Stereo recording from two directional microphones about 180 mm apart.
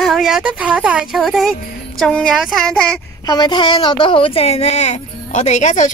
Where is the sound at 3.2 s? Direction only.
20° left (ahead or behind).